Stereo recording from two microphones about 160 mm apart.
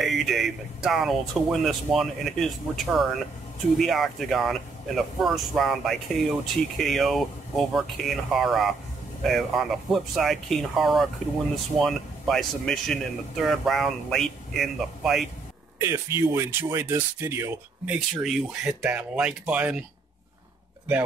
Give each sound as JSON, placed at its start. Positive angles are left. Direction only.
{"t": 0.0, "sound": "speech", "side_deg": 0}
{"t": 15.8, "sound": "speech", "side_deg": -20}
{"t": 17.9, "sound": "speech", "side_deg": 0}